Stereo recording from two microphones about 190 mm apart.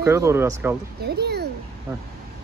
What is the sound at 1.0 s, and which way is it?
Speech, 60° right (ahead or behind).